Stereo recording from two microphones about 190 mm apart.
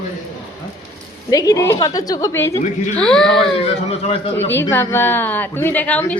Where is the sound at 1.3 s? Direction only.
20° left (ahead or behind).